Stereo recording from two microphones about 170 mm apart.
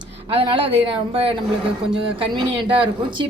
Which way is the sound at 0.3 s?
30° right (ahead or behind).